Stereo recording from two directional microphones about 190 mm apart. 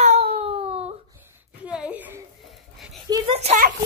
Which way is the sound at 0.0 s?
35° right (ahead or behind).